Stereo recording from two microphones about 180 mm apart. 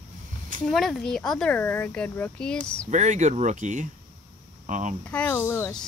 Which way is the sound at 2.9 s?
40° right (ahead or behind).